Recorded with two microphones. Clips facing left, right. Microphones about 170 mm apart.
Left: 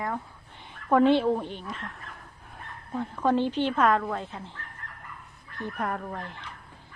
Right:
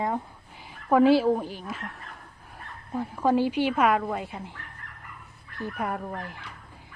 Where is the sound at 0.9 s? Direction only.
5° right (ahead or behind).